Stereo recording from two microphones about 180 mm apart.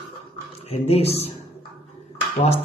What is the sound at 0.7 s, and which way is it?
Speech, 35° left (ahead or behind).